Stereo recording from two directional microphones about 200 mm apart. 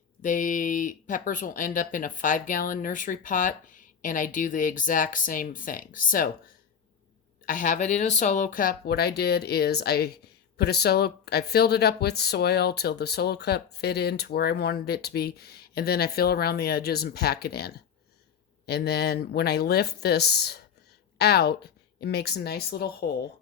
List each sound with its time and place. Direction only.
0.2 s speech: 40° left (ahead or behind)
7.4 s speech: 40° left (ahead or behind)